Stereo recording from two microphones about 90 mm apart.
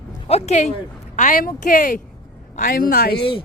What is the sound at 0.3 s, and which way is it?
Speech, 90° left.